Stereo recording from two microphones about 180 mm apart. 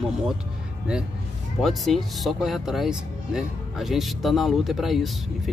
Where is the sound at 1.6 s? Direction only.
Centre (ahead or behind).